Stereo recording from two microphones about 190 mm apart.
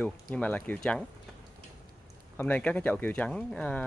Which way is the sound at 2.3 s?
10° left (ahead or behind).